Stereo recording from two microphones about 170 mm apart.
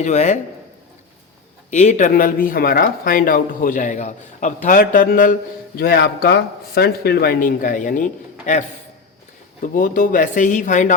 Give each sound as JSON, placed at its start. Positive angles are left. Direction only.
{"t": 0.0, "sound": "speech", "side_deg": 45}
{"t": 1.7, "sound": "speech", "side_deg": 45}
{"t": 9.6, "sound": "speech", "side_deg": 55}